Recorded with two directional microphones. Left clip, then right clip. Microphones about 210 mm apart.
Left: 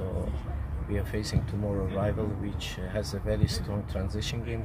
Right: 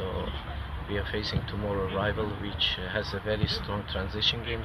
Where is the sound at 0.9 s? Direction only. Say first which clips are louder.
Right 2 dB; 20° left (ahead or behind).